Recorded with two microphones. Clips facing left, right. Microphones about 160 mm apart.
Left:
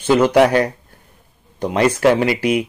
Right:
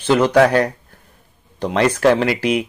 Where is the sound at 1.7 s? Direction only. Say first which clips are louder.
Even; 10° left (ahead or behind).